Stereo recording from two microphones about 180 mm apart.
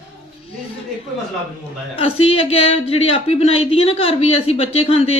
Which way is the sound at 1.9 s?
30° left (ahead or behind).